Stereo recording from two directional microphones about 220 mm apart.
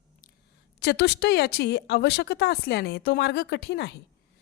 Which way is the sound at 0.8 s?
50° left (ahead or behind).